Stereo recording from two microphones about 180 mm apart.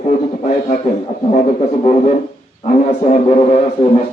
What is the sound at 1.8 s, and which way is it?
A man's voice, 40° left (ahead or behind).